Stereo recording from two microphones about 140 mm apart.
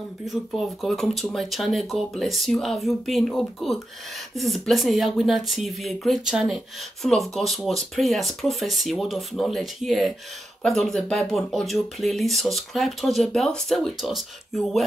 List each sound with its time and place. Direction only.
0.2 s speech: centre (ahead or behind)